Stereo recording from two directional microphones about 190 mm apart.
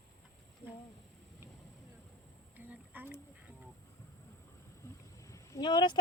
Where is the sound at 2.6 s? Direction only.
10° right (ahead or behind).